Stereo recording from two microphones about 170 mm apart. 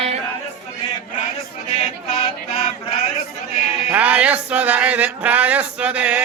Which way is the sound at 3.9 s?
10° right (ahead or behind).